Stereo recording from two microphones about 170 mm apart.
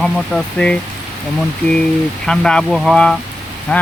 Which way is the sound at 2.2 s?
5° left (ahead or behind).